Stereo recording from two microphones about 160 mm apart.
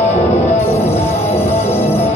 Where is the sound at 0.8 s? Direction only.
40° left (ahead or behind).